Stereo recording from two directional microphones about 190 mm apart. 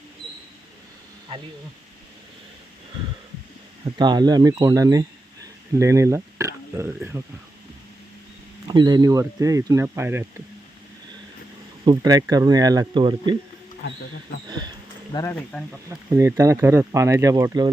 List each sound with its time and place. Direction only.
3.9 s speech: 20° right (ahead or behind)
8.6 s speech: 25° right (ahead or behind)
11.9 s speech: 20° right (ahead or behind)
14.4 s speech: 20° right (ahead or behind)
15.1 s speech: 15° left (ahead or behind)
15.4 s speech: 5° left (ahead or behind)
15.9 s speech: 15° right (ahead or behind)